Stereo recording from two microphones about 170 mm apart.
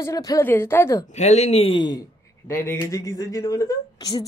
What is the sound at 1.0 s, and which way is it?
A man's voice, 40° left (ahead or behind).